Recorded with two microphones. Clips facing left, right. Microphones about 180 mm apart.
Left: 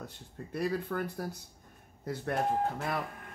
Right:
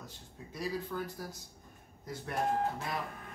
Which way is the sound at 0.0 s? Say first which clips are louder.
Left 5 dB; 60° left (ahead or behind).